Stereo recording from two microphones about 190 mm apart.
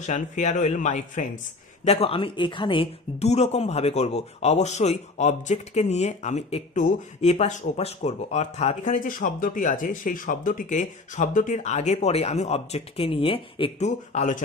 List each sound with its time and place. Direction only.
0.0 s speech: 40° left (ahead or behind)